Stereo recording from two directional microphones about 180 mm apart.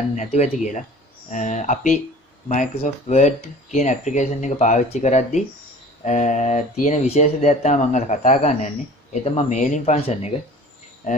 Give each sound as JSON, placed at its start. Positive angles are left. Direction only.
{"t": 0.1, "sound": "speech", "side_deg": 40}